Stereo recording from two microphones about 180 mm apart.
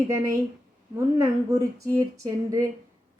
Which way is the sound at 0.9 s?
15° right (ahead or behind).